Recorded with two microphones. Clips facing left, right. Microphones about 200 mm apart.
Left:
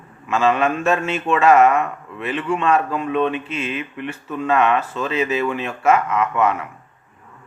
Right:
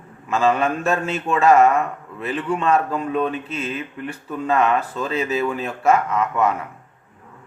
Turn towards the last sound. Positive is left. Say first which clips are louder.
# left 1 dB
turn(degrees=-35)  # may be behind; listen again after turning